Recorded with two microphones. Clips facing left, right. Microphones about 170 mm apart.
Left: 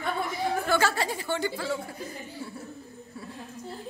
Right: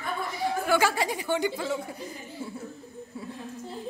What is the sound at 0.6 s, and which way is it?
A woman's voice, 10° right (ahead or behind).